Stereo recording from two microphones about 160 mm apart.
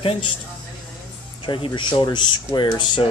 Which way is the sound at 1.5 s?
30° left (ahead or behind).